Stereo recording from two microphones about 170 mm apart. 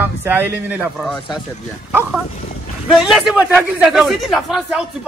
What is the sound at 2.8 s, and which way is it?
A man's voice, centre (ahead or behind).